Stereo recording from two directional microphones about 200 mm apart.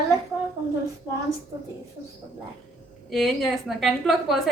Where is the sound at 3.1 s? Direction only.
Centre (ahead or behind).